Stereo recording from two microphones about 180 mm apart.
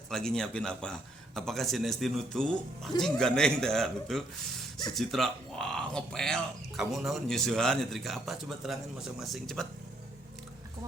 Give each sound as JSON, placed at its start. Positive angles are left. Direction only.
{"t": 0.1, "sound": "speech", "side_deg": 5}